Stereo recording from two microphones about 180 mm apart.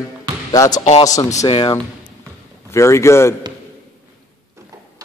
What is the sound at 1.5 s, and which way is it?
Speech, 30° left (ahead or behind).